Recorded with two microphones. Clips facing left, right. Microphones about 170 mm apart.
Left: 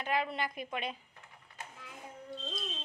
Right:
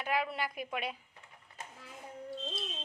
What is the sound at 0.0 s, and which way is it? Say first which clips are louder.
Speech: even; 5° right (ahead or behind).